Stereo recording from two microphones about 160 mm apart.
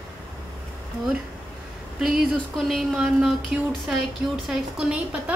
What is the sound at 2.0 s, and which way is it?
A woman's voice, 5° right (ahead or behind).